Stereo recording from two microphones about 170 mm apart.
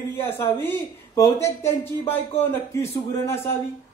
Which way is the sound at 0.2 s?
15° left (ahead or behind).